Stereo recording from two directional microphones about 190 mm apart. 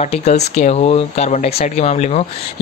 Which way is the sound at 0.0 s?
40° left (ahead or behind).